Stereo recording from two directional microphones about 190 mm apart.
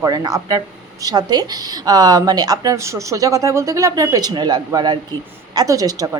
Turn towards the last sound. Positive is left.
turn(degrees=-20)  # may be behind; listen again after turning